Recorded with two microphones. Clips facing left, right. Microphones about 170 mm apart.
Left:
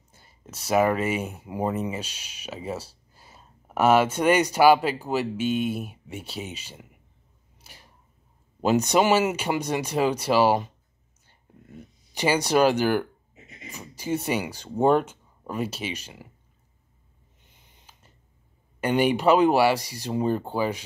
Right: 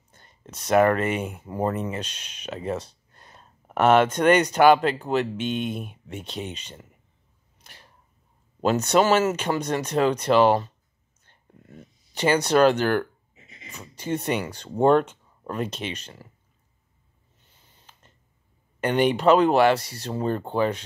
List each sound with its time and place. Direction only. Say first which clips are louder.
0.1 s speech: right 1 dB; 5° left (ahead or behind)
7.7 s a sound: even; 5° left (ahead or behind)
8.6 s speech: right 1 dB; 10° left (ahead or behind)
12.1 s speech: right 2 dB; 10° left (ahead or behind)
17.4 s a sound: even; 15° left (ahead or behind)
18.8 s speech: right 1 dB; 10° left (ahead or behind)